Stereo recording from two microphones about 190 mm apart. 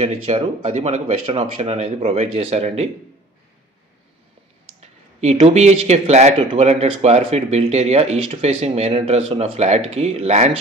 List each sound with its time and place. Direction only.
0.0 s speech: 35° right (ahead or behind)
4.7 s speech: 35° right (ahead or behind)